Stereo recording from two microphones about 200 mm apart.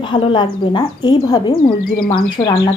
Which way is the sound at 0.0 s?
25° left (ahead or behind).